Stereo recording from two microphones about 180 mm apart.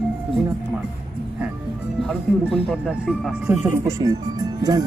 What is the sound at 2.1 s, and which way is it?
Speech, centre (ahead or behind).